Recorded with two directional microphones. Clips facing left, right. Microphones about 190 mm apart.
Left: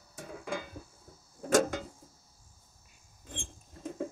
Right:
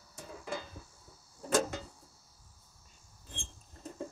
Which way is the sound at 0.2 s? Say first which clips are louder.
Left 3 dB; 55° left (ahead or behind).